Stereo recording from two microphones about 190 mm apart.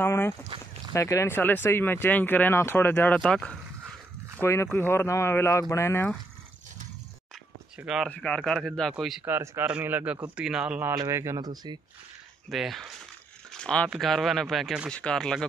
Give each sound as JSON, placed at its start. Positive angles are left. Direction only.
{"t": 0.0, "sound": "speech", "side_deg": 15}
{"t": 4.4, "sound": "speech", "side_deg": 15}
{"t": 7.8, "sound": "speech", "side_deg": -5}
{"t": 12.4, "sound": "speech", "side_deg": 0}